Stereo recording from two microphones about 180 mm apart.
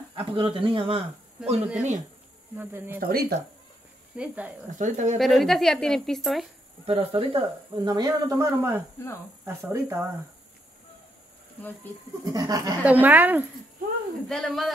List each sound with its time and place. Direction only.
0.1 s speech: 30° right (ahead or behind)
2.5 s speech: 10° right (ahead or behind)
3.0 s speech: 55° right (ahead or behind)
4.2 s speech: 5° right (ahead or behind)
4.6 s speech: 45° right (ahead or behind)
5.2 s a woman's voice: centre (ahead or behind)
6.9 s speech: 25° right (ahead or behind)
12.3 s speech: 20° right (ahead or behind)
12.8 s speech: 10° right (ahead or behind)
14.2 s a woman's voice: centre (ahead or behind)